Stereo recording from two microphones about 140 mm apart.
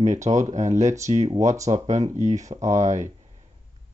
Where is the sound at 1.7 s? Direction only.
40° right (ahead or behind).